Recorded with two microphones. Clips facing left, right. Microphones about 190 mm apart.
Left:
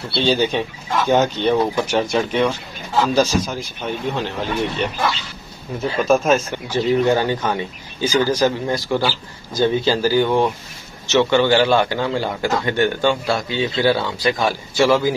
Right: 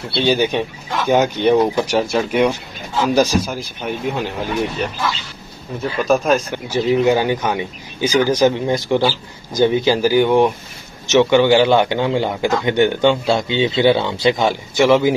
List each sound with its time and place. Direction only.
0.2 s speech: 15° right (ahead or behind)
5.8 s speech: centre (ahead or behind)
6.7 s a man's voice: 15° right (ahead or behind)